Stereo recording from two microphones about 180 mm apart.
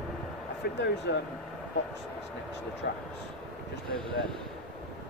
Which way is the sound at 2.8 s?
65° left (ahead or behind).